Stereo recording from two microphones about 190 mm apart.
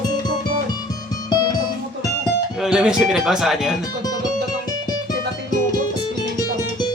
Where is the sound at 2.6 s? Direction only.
5° right (ahead or behind).